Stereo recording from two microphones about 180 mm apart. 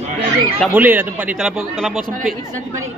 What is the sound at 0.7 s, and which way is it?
Speech, 10° right (ahead or behind).